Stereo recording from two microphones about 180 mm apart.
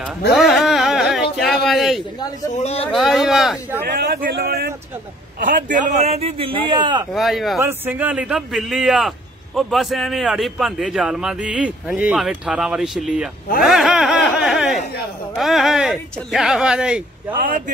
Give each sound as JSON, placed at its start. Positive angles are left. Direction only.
{"t": 0.4, "sound": "carnatic music", "side_deg": 0}
{"t": 1.3, "sound": "a sound", "side_deg": 0}
{"t": 2.6, "sound": "speech", "side_deg": 35}
{"t": 2.9, "sound": "a man's voice", "side_deg": 0}
{"t": 3.8, "sound": "speech", "side_deg": -55}
{"t": 7.1, "sound": "a man's voice", "side_deg": 0}
{"t": 17.4, "sound": "speech", "side_deg": -50}